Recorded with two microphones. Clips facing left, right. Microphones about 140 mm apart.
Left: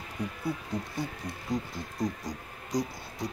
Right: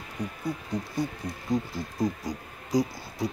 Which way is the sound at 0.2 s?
15° right (ahead or behind).